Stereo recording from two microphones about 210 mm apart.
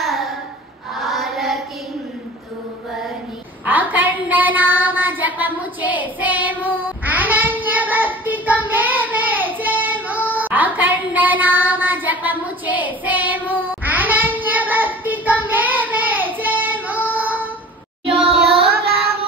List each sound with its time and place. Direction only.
0.0 s a sound: centre (ahead or behind)
0.9 s choir: centre (ahead or behind)
3.6 s child singing: 10° right (ahead or behind)
18.0 s music: 30° right (ahead or behind)
18.7 s music: 50° right (ahead or behind)